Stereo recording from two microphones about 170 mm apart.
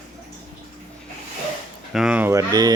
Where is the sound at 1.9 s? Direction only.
5° right (ahead or behind).